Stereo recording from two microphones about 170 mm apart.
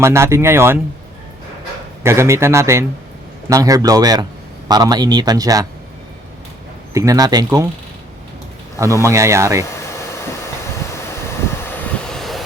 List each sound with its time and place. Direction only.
0.0 s speech: 15° right (ahead or behind)
2.0 s speech: 15° right (ahead or behind)
6.9 s speech: 20° right (ahead or behind)
8.8 s speech: 20° right (ahead or behind)
11.6 s vehicle: 5° left (ahead or behind)